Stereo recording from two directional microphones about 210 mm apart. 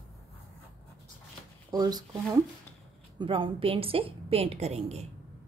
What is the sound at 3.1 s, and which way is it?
A woman's voice, 25° right (ahead or behind).